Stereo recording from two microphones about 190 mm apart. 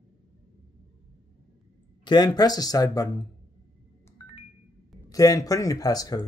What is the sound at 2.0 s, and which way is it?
Speech, 25° left (ahead or behind).